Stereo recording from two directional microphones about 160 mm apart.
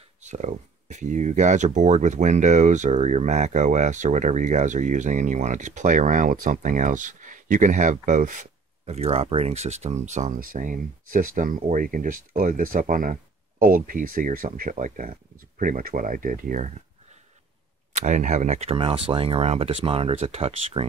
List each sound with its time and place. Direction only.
0.2 s speech: 45° right (ahead or behind)
17.9 s speech: 50° right (ahead or behind)